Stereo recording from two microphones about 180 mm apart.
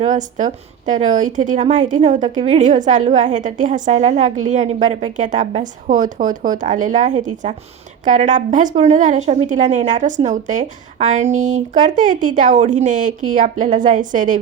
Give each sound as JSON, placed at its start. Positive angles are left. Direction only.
{"t": 0.0, "sound": "a woman's voice", "side_deg": -45}